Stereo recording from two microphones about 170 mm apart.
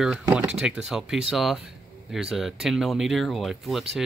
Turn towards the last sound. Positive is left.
turn(degrees=0)  # may be behind; listen again after turning